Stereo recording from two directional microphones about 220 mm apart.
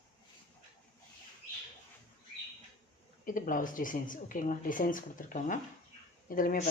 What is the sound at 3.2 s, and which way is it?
Speech, 40° left (ahead or behind).